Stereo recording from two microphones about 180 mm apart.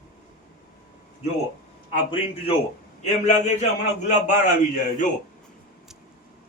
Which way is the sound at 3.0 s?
40° left (ahead or behind).